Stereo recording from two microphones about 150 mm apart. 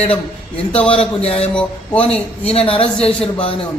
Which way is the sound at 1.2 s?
40° left (ahead or behind).